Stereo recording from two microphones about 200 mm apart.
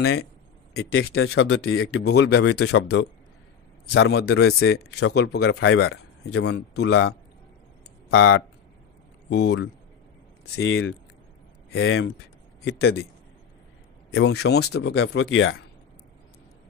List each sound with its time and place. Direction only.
0.0 s a man's voice: 90° left
0.7 s speech: 70° left (ahead or behind); by 2.0 s 90° left
2.0 s a man's voice: 55° left (ahead or behind)
5.6 s a man's voice: 80° left; by 7.2 s 60° left (ahead or behind)
8.1 s speech: 80° left
9.3 s a man's voice: 55° left (ahead or behind)
10.6 s speech: 85° left
11.7 s speech: 70° left (ahead or behind)
12.6 s a man's voice: 55° left (ahead or behind)
14.1 s a man's voice: 55° left (ahead or behind); by 15.5 s 75° left (ahead or behind)